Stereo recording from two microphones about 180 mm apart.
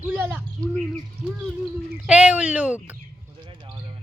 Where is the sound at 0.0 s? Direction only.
10° right (ahead or behind).